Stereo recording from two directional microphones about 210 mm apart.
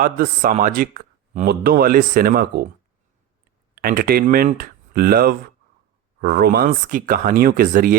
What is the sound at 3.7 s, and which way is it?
Speech, 45° right (ahead or behind).